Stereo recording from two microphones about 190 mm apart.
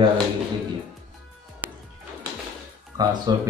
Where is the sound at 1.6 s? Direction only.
10° right (ahead or behind).